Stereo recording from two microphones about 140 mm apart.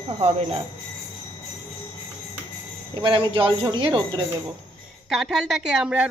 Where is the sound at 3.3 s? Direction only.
35° right (ahead or behind).